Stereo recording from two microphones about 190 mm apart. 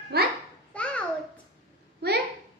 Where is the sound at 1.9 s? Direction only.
60° right (ahead or behind).